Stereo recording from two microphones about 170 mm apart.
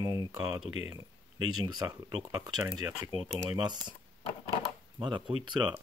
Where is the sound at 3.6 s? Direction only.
25° right (ahead or behind).